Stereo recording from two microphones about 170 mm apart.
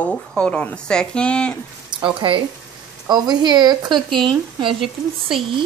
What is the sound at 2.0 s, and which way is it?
Speech, 30° right (ahead or behind).